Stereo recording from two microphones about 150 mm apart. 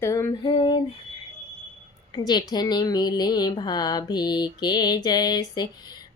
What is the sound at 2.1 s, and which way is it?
A woman's voice, 25° left (ahead or behind).